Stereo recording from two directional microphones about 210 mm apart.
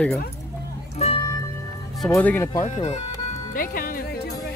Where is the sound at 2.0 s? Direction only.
10° left (ahead or behind).